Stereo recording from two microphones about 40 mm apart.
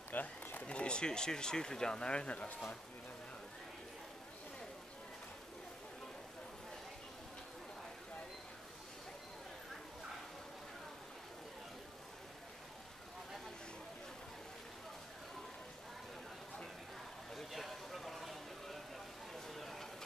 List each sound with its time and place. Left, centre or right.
0.1 s run: left
0.7 s speech: left
17.5 s vehicle: centre
19.3 s a sound: centre